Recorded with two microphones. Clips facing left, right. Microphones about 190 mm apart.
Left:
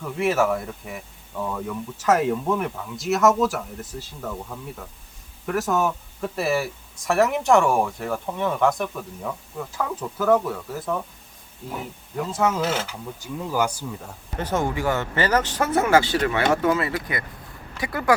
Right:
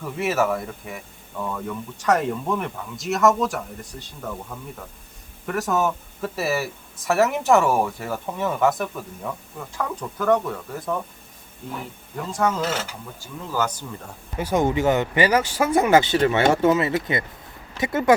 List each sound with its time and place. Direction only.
0.0 s speech: centre (ahead or behind)
5.5 s speech: centre (ahead or behind)
12.3 s speech: 5° left (ahead or behind)
14.3 s speech: 10° right (ahead or behind)